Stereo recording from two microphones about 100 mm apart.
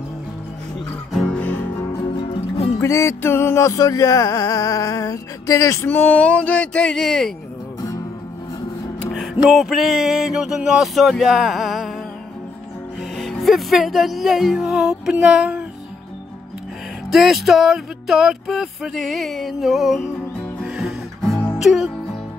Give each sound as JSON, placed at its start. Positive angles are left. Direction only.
{"t": 1.3, "sound": "music", "side_deg": 15}
{"t": 2.0, "sound": "music", "side_deg": 60}
{"t": 2.8, "sound": "music", "side_deg": 30}
{"t": 5.9, "sound": "speech", "side_deg": 20}
{"t": 9.5, "sound": "speech", "side_deg": 0}
{"t": 13.2, "sound": "speech", "side_deg": 0}
{"t": 17.1, "sound": "speech", "side_deg": -5}
{"t": 20.6, "sound": "music", "side_deg": -5}
{"t": 21.6, "sound": "speech", "side_deg": -5}